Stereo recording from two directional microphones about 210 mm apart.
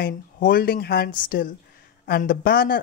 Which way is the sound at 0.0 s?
45° left (ahead or behind).